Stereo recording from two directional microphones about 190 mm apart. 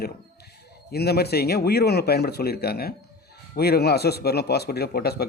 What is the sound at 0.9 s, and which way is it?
Speech, 55° left (ahead or behind).